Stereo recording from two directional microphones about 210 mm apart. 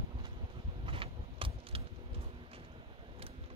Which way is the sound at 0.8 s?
25° right (ahead or behind).